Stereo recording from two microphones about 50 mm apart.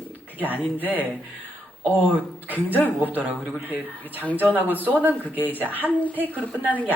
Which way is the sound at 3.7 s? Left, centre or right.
Right.